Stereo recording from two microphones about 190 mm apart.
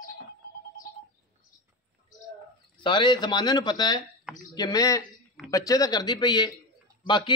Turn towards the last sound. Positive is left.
turn(degrees=25)  # may be behind; listen again after turning